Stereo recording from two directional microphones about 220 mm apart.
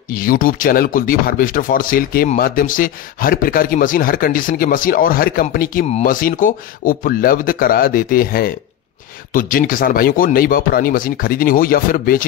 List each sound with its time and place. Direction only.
0.1 s speech: 40° left (ahead or behind)